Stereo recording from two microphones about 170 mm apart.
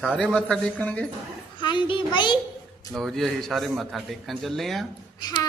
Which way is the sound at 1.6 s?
25° left (ahead or behind).